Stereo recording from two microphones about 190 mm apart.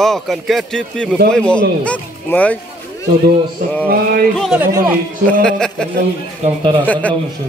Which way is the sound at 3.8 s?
55° right (ahead or behind).